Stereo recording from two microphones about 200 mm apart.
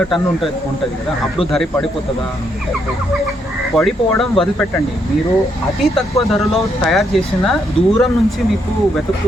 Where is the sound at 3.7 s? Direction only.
Centre (ahead or behind).